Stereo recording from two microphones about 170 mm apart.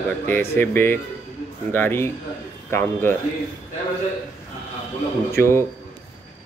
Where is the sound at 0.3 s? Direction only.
10° left (ahead or behind).